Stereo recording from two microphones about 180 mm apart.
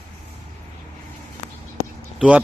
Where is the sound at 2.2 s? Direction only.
5° right (ahead or behind).